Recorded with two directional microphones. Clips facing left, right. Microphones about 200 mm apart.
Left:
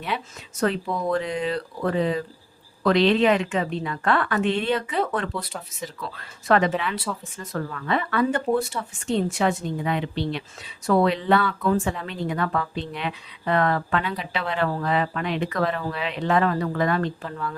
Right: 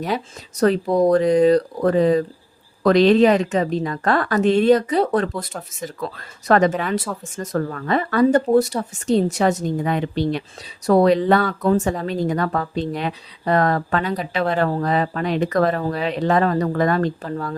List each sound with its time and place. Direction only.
0.0 s a woman's voice: 40° right (ahead or behind)